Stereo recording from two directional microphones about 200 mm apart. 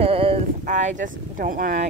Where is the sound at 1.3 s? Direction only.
45° right (ahead or behind).